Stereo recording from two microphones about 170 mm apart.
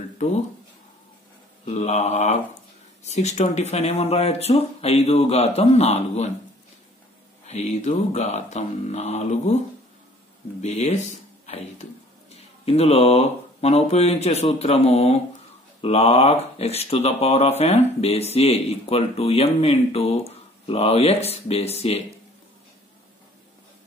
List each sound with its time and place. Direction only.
1.7 s mantra: 40° left (ahead or behind)
3.0 s speech: 40° left (ahead or behind)
7.4 s speech: 40° left (ahead or behind)
10.6 s speech: 40° left (ahead or behind)